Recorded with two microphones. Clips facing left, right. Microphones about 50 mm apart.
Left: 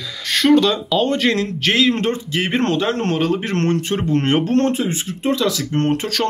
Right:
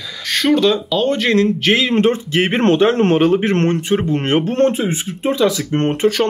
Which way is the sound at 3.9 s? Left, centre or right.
Centre.